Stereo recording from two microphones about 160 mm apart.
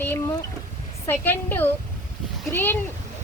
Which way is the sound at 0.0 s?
15° left (ahead or behind).